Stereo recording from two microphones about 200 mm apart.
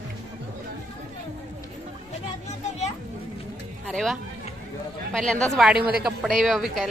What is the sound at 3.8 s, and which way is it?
Speech, centre (ahead or behind).